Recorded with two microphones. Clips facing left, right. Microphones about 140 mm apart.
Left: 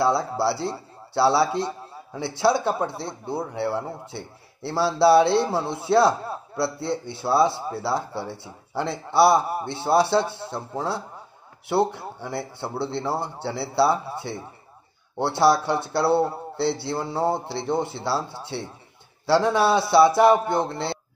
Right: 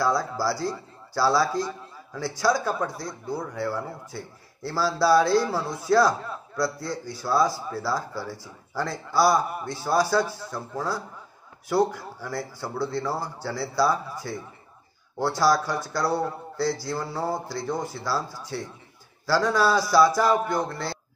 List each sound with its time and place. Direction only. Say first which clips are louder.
0.0 s speech: left 3 dB; 25° left (ahead or behind)
1.6 s a sound: left 2 dB; 25° left (ahead or behind)
2.4 s a man's voice: left 3 dB; 25° left (ahead or behind)